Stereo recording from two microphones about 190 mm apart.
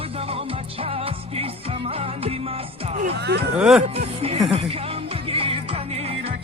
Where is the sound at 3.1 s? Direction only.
60° right (ahead or behind).